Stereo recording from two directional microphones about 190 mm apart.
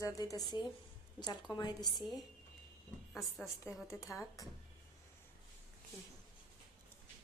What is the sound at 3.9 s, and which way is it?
Speech, 10° left (ahead or behind).